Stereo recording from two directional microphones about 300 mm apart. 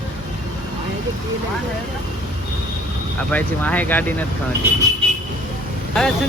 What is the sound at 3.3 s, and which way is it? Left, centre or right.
Speech, centre.